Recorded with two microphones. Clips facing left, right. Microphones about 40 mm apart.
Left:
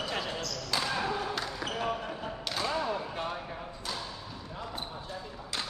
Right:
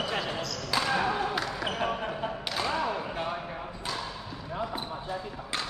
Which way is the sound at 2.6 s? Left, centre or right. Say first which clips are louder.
Right 2 dB; right.